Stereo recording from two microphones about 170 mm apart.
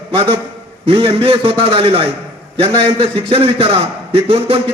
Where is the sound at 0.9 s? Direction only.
35° right (ahead or behind).